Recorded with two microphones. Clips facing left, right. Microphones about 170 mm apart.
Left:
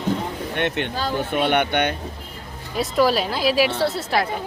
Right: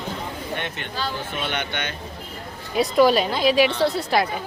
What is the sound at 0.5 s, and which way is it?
Speech, 65° left (ahead or behind).